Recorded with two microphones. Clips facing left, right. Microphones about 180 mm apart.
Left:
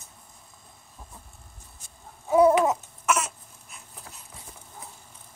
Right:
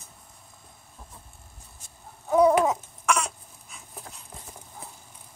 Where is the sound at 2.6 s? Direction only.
5° left (ahead or behind).